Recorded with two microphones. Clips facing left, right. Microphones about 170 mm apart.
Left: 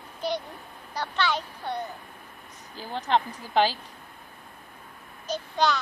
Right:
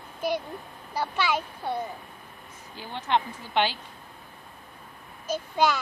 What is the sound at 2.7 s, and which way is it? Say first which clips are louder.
Speech: left 1 dB; 35° left (ahead or behind).